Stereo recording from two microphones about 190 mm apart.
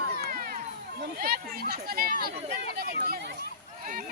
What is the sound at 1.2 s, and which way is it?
Speech, 55° right (ahead or behind).